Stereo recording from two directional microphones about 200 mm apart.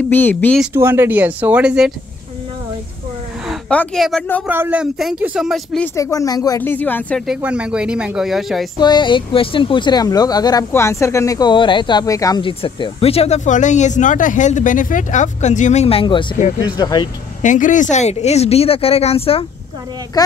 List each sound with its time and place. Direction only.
0.1 s speech: 10° left (ahead or behind)
0.6 s speech: 10° right (ahead or behind)
3.4 s speech: 5° left (ahead or behind)
4.5 s speech: 10° right (ahead or behind)
5.9 s speech: 15° left (ahead or behind); by 8.6 s centre (ahead or behind)
8.7 s speech: 20° left (ahead or behind)
17.4 s speech: 40° left (ahead or behind)